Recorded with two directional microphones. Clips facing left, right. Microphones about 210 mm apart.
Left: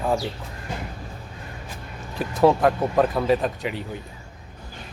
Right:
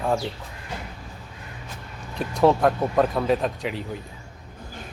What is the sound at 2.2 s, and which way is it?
Speech, centre (ahead or behind).